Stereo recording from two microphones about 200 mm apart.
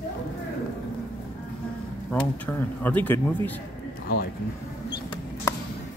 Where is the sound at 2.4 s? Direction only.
10° left (ahead or behind).